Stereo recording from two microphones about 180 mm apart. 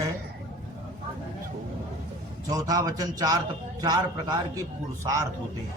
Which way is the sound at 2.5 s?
20° right (ahead or behind).